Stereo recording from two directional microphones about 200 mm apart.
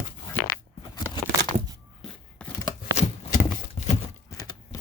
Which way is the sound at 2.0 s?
Centre (ahead or behind).